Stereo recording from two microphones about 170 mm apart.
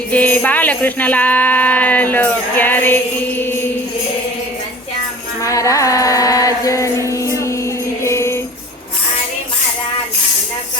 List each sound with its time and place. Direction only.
0.1 s jingle bell: 10° left (ahead or behind)
5.4 s music: 20° left (ahead or behind)